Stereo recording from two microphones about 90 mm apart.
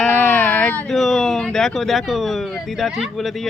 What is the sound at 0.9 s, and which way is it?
Speech, 5° left (ahead or behind).